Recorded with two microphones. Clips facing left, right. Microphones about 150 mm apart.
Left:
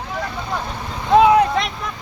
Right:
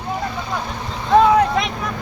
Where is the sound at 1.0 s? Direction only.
10° left (ahead or behind).